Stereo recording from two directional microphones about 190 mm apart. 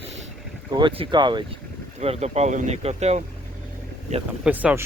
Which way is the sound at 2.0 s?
35° right (ahead or behind).